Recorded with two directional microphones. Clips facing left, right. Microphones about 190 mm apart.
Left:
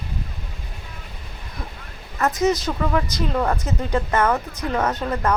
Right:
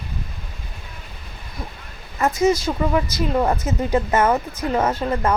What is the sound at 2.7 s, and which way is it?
Speech, 15° right (ahead or behind).